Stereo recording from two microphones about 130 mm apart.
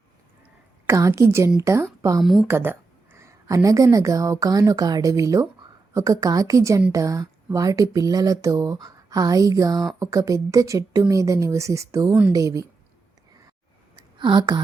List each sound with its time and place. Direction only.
0.9 s speech: 25° right (ahead or behind)
2.2 s speech: centre (ahead or behind)
2.5 s speech: 15° right (ahead or behind)
14.2 s speech: 35° right (ahead or behind)